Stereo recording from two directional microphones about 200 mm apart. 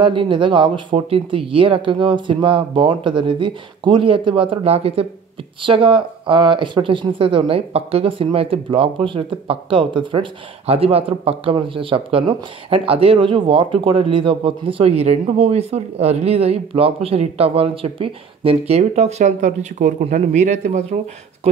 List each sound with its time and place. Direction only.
0.0 s speech: 25° right (ahead or behind)